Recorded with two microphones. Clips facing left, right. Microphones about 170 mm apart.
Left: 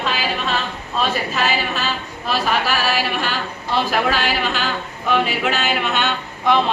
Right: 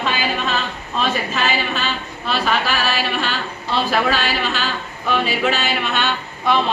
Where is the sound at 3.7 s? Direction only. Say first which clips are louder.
Even; 15° left (ahead or behind).